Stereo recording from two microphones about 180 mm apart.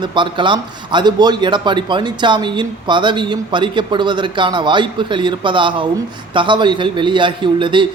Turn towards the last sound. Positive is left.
turn(degrees=-25)  # may be behind; listen again after turning